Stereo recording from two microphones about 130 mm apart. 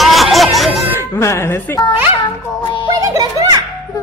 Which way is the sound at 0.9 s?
20° left (ahead or behind).